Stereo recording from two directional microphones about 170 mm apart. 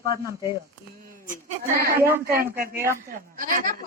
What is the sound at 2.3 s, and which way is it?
Speech, 60° right (ahead or behind).